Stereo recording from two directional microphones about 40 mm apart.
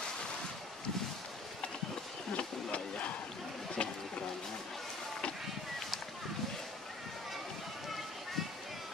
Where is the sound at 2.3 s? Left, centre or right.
Left.